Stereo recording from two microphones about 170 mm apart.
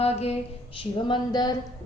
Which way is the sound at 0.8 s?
30° left (ahead or behind).